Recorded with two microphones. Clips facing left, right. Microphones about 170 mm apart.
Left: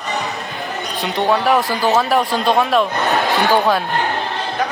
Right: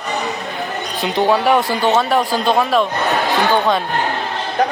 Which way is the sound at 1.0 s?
Centre (ahead or behind).